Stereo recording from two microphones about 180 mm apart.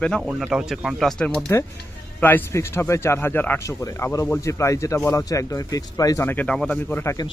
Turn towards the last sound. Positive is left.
turn(degrees=15)  # may be behind; listen again after turning